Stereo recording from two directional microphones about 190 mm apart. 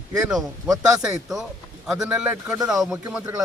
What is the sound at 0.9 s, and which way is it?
A man's voice, centre (ahead or behind).